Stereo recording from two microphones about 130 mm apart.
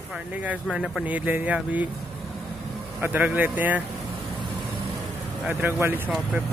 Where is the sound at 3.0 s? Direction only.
15° right (ahead or behind).